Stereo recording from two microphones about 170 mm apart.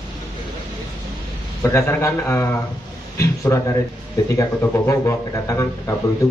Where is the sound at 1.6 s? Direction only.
15° left (ahead or behind).